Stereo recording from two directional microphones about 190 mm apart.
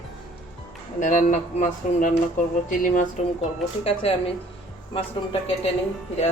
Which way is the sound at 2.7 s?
40° left (ahead or behind).